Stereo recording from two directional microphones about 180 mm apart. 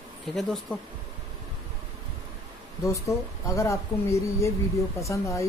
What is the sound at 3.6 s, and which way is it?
Speech, 15° left (ahead or behind).